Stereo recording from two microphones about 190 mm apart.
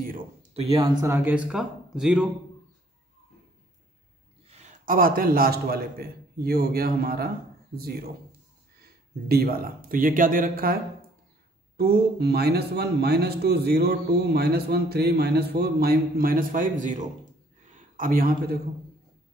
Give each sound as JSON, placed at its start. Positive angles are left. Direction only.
{"t": 0.0, "sound": "a sound", "side_deg": -45}
{"t": 0.7, "sound": "speech", "side_deg": -15}
{"t": 4.5, "sound": "a man's voice", "side_deg": -45}
{"t": 9.3, "sound": "speech", "side_deg": -55}